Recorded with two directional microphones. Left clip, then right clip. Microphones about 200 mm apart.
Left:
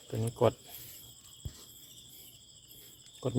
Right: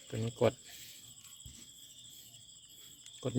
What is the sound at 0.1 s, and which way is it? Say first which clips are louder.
Speech: left 3 dB; centre (ahead or behind).